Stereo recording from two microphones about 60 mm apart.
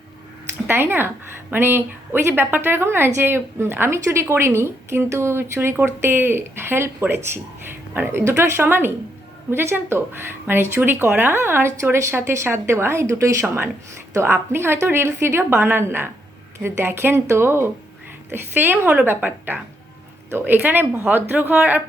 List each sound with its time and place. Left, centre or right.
0.7 s a woman's voice: right